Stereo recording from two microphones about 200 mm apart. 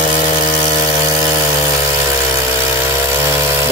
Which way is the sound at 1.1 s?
15° right (ahead or behind).